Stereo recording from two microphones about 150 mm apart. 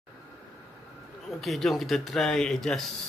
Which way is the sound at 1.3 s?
Centre (ahead or behind).